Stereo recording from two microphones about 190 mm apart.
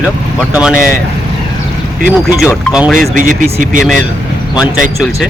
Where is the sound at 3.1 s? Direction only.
45° right (ahead or behind).